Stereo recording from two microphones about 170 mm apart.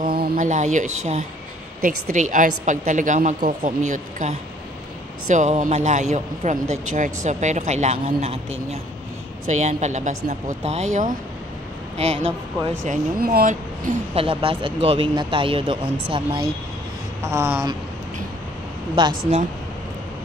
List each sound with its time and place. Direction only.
0.0 s speech: 60° right (ahead or behind); by 12.4 s 40° right (ahead or behind)
12.8 s speech: 55° right (ahead or behind)
14.1 s speech: 35° right (ahead or behind)
17.3 s speech: 15° right (ahead or behind)
19.0 s speech: 30° right (ahead or behind)